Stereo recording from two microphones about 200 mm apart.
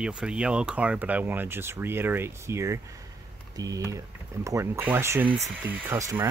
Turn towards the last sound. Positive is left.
turn(degrees=-15)  # may be behind; listen again after turning